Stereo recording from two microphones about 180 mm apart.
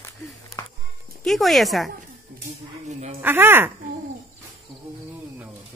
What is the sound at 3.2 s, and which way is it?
Speech, 10° right (ahead or behind).